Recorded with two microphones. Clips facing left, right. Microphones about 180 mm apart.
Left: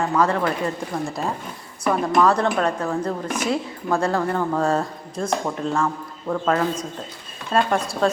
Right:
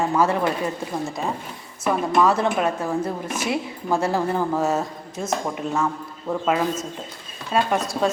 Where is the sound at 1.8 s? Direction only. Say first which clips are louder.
Left 1 dB; centre (ahead or behind).